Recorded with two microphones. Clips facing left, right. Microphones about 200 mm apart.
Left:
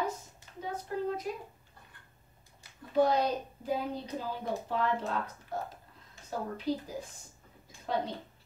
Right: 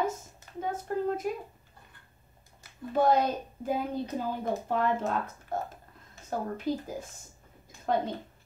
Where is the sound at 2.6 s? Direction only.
50° right (ahead or behind).